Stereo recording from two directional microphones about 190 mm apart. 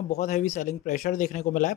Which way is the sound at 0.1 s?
40° left (ahead or behind).